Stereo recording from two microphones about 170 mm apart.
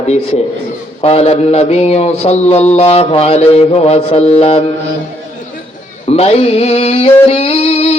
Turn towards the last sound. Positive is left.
turn(degrees=40)  # may be behind; listen again after turning